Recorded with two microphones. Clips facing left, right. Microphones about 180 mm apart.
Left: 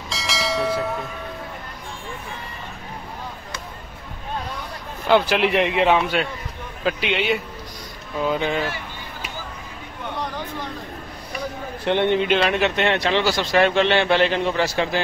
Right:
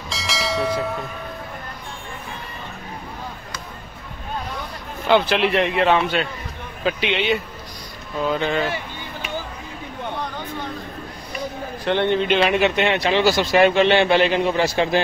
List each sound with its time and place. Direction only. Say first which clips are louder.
0.1 s bell: even; centre (ahead or behind)
5.0 s speech: even; 10° left (ahead or behind)
5.9 s a man's voice: even; 5° left (ahead or behind)
11.8 s a man's voice: even; 20° left (ahead or behind)
12.3 s speech: right 2 dB; 5° right (ahead or behind)